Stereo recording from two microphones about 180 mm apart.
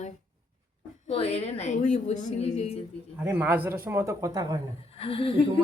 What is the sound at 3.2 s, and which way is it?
A man's voice, 10° right (ahead or behind).